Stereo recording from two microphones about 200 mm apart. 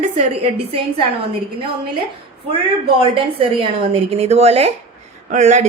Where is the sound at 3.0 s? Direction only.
25° right (ahead or behind).